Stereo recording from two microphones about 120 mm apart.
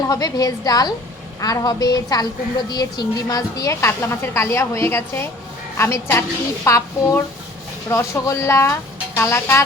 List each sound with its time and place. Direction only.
0.1 s a woman's voice: 30° left (ahead or behind)